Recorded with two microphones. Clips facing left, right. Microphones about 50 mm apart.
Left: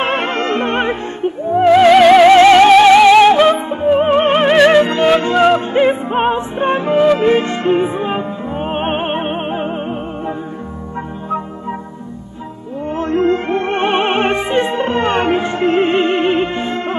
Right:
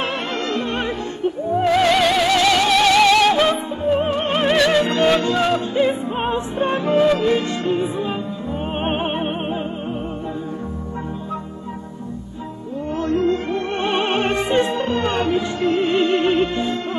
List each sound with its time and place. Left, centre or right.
0.0 s music: left
1.9 s music: centre
2.2 s music: left
2.8 s music: left
5.2 s music: left
6.9 s music: left
7.2 s music: left
12.9 s music: left
14.7 s music: left